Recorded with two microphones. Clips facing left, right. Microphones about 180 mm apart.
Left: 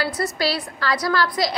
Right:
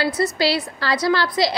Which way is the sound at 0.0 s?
25° right (ahead or behind).